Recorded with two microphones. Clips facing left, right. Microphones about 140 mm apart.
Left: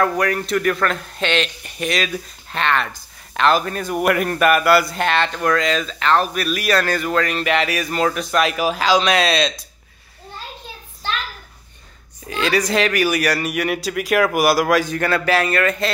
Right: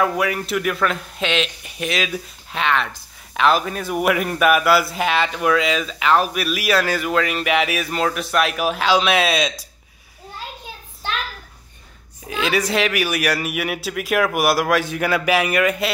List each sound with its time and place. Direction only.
0.0 s speech: 5° right (ahead or behind)
12.3 s speech: 5° right (ahead or behind)